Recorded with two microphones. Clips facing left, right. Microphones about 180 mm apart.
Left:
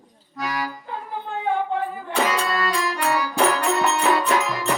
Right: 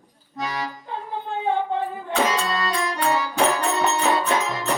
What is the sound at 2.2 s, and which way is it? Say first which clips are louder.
Music: left 1 dB; 25° right (ahead or behind).